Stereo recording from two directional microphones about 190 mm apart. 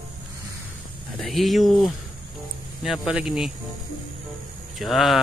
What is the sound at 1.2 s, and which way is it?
Speech, centre (ahead or behind).